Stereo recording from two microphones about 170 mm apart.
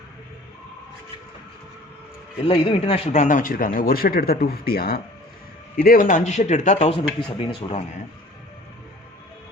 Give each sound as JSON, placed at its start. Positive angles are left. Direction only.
{"t": 2.4, "sound": "speech", "side_deg": 35}